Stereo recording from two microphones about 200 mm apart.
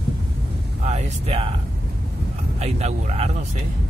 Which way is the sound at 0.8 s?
30° right (ahead or behind).